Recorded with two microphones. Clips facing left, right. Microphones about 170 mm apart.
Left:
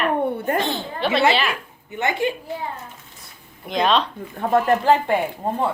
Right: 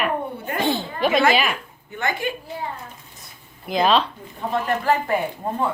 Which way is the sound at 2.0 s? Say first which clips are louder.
Left 3 dB; 20° left (ahead or behind).